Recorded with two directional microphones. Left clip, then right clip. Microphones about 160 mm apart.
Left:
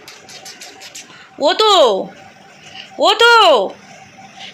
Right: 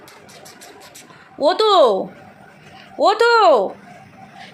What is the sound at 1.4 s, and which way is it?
Speech, 5° right (ahead or behind).